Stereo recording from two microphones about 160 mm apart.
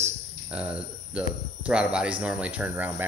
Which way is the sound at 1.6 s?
5° right (ahead or behind).